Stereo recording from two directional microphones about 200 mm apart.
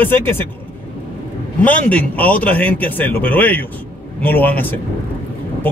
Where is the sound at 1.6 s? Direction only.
5° left (ahead or behind).